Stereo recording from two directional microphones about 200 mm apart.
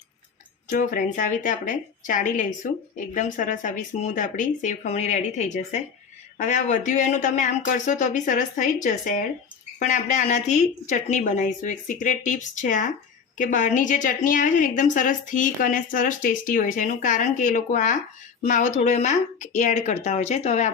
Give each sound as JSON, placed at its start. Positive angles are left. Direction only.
{"t": 0.7, "sound": "a woman's voice", "side_deg": 40}